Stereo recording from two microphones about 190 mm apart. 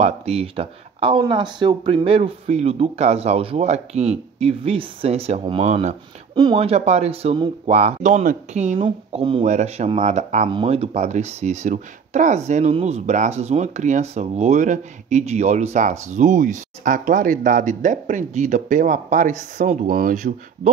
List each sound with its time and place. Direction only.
0.0 s speech: 35° right (ahead or behind)